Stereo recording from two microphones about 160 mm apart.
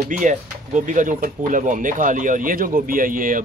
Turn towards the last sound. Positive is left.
turn(degrees=-60)  # may be behind; listen again after turning